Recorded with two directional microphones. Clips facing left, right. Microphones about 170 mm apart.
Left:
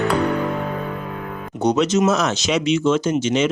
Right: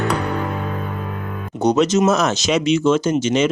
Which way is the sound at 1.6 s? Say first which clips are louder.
Right 2 dB; 40° right (ahead or behind).